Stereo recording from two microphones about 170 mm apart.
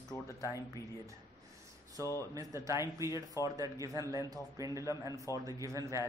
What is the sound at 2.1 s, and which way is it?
A man's voice, 20° right (ahead or behind).